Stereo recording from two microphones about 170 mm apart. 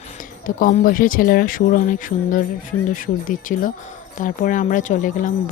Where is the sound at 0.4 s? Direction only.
50° left (ahead or behind).